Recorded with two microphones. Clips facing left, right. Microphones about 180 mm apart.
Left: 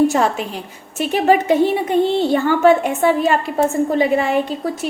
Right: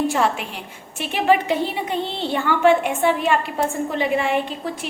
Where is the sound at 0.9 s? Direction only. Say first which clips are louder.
Left 4 dB; 45° left (ahead or behind).